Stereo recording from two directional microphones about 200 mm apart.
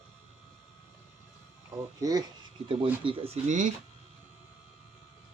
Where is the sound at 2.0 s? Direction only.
20° right (ahead or behind); by 3.7 s 35° right (ahead or behind).